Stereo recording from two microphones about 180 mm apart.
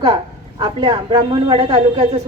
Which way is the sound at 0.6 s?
25° right (ahead or behind).